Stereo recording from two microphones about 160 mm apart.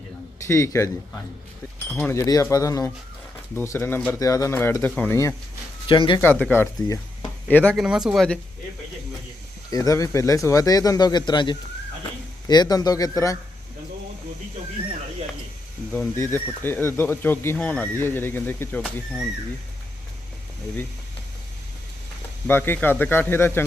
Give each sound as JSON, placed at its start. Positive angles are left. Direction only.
{"t": 0.4, "sound": "speech", "side_deg": 20}
{"t": 1.9, "sound": "speech", "side_deg": 10}
{"t": 5.9, "sound": "speech", "side_deg": 30}
{"t": 6.1, "sound": "speech", "side_deg": 10}
{"t": 7.5, "sound": "speech", "side_deg": 5}
{"t": 7.9, "sound": "speech", "side_deg": -5}
{"t": 9.6, "sound": "speech", "side_deg": 20}
{"t": 15.9, "sound": "speech", "side_deg": 15}
{"t": 22.4, "sound": "speech", "side_deg": 15}